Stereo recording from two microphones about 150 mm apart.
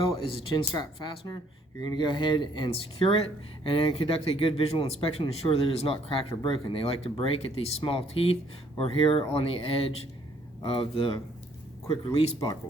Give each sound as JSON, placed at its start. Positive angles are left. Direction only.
{"t": 0.3, "sound": "speech", "side_deg": 35}